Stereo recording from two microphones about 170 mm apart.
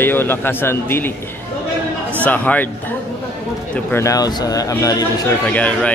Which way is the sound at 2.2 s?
10° left (ahead or behind).